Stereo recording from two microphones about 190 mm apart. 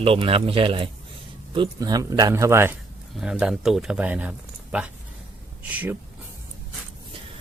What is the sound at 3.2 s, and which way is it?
Speech, 5° right (ahead or behind).